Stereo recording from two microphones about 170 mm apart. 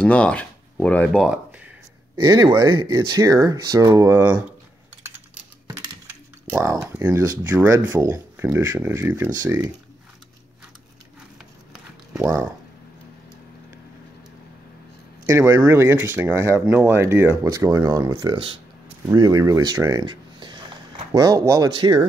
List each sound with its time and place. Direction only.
0.0 s speech: 5° left (ahead or behind)
2.1 s speech: 25° right (ahead or behind)
5.7 s typing: 15° right (ahead or behind)
6.8 s speech: 10° right (ahead or behind)
11.7 s clip-clop: 5° right (ahead or behind)
15.2 s speech: 20° right (ahead or behind)